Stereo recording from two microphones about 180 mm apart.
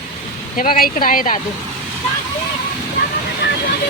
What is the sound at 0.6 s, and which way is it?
Speech, 55° left (ahead or behind).